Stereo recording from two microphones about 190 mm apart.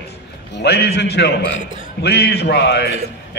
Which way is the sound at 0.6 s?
60° left (ahead or behind).